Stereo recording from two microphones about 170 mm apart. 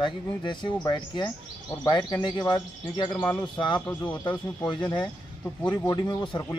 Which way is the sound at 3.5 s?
25° left (ahead or behind).